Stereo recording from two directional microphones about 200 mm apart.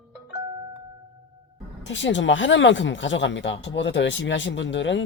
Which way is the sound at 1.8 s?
65° left (ahead or behind).